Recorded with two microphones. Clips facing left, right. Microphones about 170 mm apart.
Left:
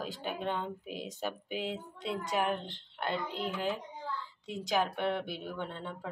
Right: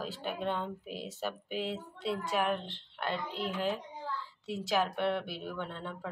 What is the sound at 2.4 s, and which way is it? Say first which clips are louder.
Speech: even; centre (ahead or behind).